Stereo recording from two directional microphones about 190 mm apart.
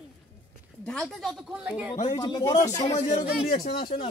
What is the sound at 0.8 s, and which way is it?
A woman's voice, 5° left (ahead or behind).